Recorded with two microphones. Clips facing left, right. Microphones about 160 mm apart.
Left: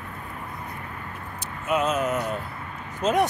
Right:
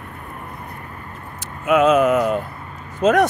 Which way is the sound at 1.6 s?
80° right.